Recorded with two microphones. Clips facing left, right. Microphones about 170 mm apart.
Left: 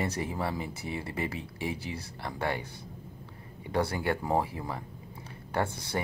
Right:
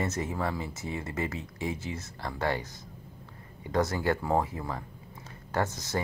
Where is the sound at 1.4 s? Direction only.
20° right (ahead or behind).